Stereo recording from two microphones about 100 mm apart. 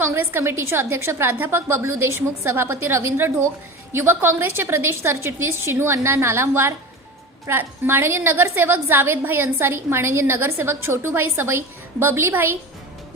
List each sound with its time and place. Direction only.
0.0 s a woman's voice: 25° right (ahead or behind)